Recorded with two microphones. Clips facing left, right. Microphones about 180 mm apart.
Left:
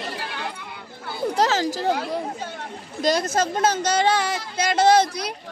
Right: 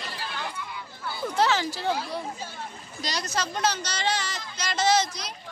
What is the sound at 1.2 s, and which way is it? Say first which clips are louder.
A woman's voice: left 4 dB; 40° left (ahead or behind).